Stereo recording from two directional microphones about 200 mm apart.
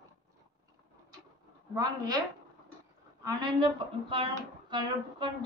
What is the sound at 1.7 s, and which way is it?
Speech, 20° right (ahead or behind).